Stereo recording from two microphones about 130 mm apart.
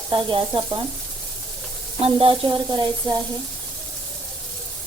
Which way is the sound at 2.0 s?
45° right (ahead or behind).